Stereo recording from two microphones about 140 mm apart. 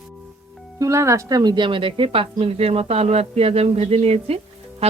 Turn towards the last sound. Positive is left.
turn(degrees=-45)  # may be behind; listen again after turning